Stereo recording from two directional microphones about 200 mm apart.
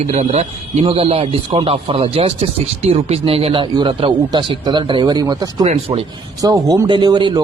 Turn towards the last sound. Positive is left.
turn(degrees=-20)  # may be behind; listen again after turning